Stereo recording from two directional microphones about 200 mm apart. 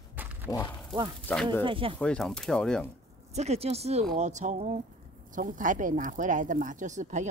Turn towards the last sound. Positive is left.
turn(degrees=-35)  # may be behind; listen again after turning